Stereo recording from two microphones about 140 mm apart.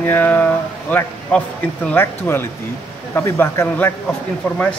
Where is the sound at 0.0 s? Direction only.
15° left (ahead or behind).